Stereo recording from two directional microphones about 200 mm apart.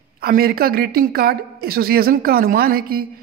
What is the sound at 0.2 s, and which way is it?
A woman's voice, 50° right (ahead or behind).